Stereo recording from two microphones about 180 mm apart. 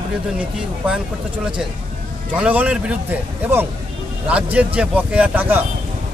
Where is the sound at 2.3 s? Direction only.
10° right (ahead or behind).